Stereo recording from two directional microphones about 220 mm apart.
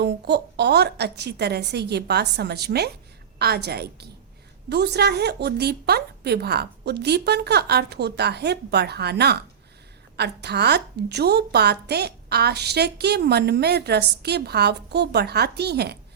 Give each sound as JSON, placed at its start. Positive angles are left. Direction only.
{"t": 0.0, "sound": "a woman's voice", "side_deg": -50}